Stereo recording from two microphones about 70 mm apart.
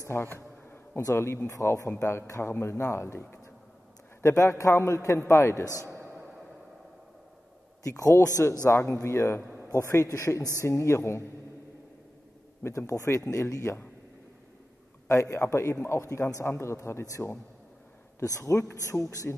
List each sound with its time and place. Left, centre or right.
0.1 s a sound: left
1.0 s a man's voice: left
1.5 s a man's voice: left
7.9 s a man's voice: left
8.6 s a man's voice: left
9.5 s a sound: right
9.8 s a man's voice: left
12.6 s a man's voice: left
15.0 s a man's voice: left
18.4 s a man's voice: left